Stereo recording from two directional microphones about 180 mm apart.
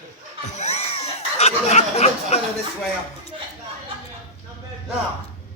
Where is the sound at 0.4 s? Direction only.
40° left (ahead or behind).